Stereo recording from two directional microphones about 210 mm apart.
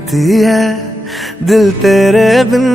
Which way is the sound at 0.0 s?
Centre (ahead or behind).